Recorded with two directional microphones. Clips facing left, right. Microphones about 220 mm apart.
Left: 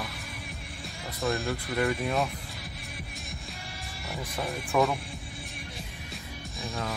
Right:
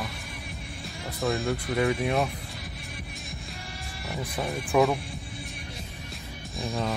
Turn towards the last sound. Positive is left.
turn(degrees=0)  # may be behind; listen again after turning